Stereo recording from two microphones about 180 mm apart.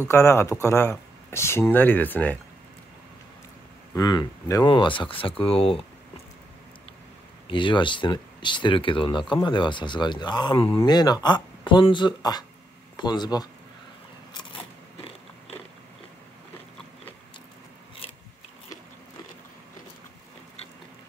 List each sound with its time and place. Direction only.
0.1 s speech: 15° left (ahead or behind)
3.9 s speech: 25° left (ahead or behind)
7.4 s speech: 25° left (ahead or behind)
14.3 s biting: 30° left (ahead or behind)